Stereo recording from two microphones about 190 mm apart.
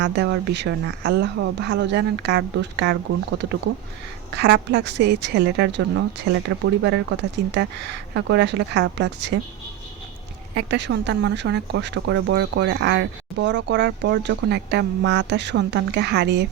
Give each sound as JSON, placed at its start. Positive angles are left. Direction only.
{"t": 0.0, "sound": "speech", "side_deg": -65}
{"t": 10.5, "sound": "speech", "side_deg": -60}